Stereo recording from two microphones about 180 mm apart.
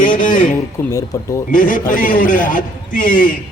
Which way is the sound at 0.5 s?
15° left (ahead or behind).